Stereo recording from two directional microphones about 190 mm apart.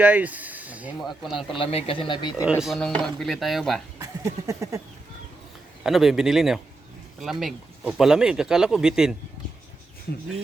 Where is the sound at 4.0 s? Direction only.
15° right (ahead or behind).